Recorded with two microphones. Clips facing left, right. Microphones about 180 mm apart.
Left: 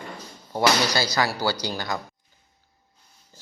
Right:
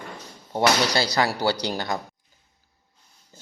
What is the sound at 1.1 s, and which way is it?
Speech, 25° right (ahead or behind).